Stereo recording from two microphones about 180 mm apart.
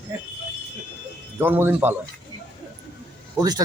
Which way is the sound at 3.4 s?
20° right (ahead or behind).